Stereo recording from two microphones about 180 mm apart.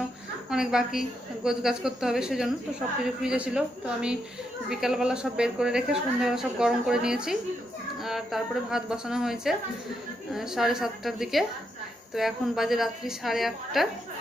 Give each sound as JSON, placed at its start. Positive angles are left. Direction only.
{"t": 0.5, "sound": "speech", "side_deg": -5}